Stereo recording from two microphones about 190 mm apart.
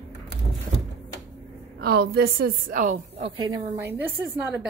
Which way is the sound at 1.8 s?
55° right (ahead or behind).